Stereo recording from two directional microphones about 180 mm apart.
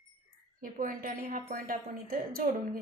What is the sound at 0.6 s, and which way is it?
A woman's voice, 50° right (ahead or behind).